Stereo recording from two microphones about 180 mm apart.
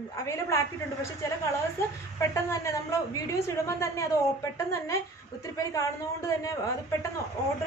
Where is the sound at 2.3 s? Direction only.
15° left (ahead or behind).